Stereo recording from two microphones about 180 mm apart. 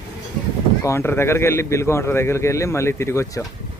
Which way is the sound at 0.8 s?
15° left (ahead or behind).